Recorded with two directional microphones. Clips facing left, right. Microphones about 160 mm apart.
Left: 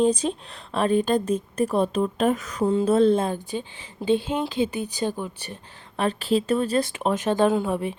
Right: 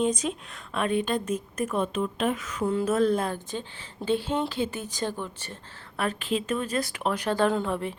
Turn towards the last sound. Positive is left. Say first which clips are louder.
# left 4 dB
turn(degrees=15)  # may be behind; listen again after turning